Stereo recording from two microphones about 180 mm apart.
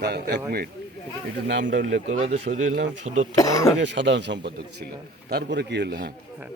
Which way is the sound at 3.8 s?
80° right.